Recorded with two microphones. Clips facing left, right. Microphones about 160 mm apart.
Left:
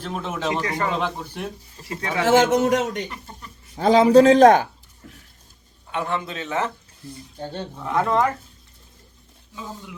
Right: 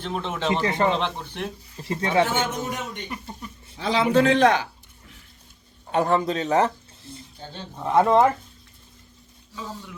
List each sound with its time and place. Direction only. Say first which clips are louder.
0.0 s speech: even; 5° left (ahead or behind)
0.5 s speech: right 5 dB; 25° right (ahead or behind)
0.9 s speech: left 1 dB; 5° left (ahead or behind)
1.8 s speech: right 5 dB; 25° right (ahead or behind)
2.2 s a man's voice: left 9 dB; 90° left
3.1 s speech: right 4 dB; 10° right (ahead or behind)
3.8 s a man's voice: left 7 dB; 45° left (ahead or behind)
5.9 s speech: right 6 dB; 35° right (ahead or behind)
7.3 s speech: left 9 dB; 60° left (ahead or behind)
7.9 s speech: right 4 dB; 20° right (ahead or behind)
9.6 s speech: even; 15° left (ahead or behind)